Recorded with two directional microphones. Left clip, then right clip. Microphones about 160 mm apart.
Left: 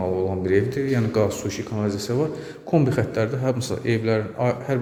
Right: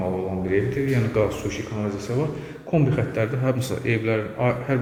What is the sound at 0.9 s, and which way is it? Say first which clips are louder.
A man's voice: left 1 dB; 35° left (ahead or behind).